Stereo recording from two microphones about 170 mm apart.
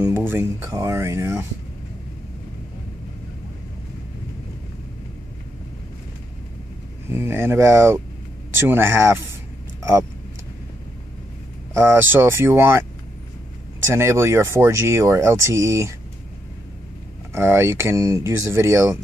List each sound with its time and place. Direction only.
0.0 s speech: 15° right (ahead or behind)
7.1 s speech: 15° right (ahead or behind)
11.7 s speech: 15° right (ahead or behind)
13.8 s speech: 15° right (ahead or behind)
17.3 s speech: 15° right (ahead or behind)